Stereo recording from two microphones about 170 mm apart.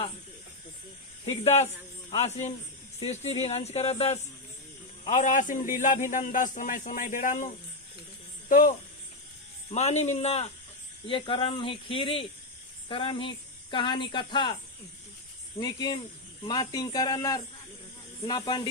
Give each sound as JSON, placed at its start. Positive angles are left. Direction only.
{"t": 1.2, "sound": "a man's voice", "side_deg": 40}
{"t": 9.6, "sound": "speech", "side_deg": 40}
{"t": 15.6, "sound": "speech", "side_deg": 25}